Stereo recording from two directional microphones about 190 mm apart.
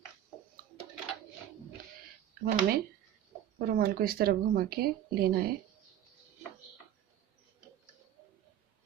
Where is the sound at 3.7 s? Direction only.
50° right (ahead or behind).